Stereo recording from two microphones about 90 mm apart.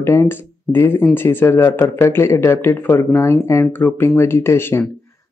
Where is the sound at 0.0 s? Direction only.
30° left (ahead or behind).